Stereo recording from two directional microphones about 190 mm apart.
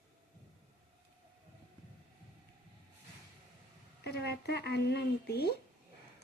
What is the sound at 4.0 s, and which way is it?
Speech, 60° left (ahead or behind).